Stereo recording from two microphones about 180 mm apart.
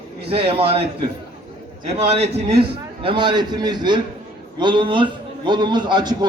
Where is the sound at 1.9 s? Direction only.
35° right (ahead or behind).